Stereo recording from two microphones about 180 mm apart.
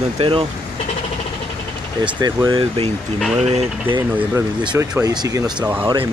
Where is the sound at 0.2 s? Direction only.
30° right (ahead or behind).